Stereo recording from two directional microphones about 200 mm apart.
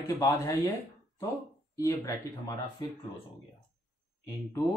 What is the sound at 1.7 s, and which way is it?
Speech, 15° left (ahead or behind).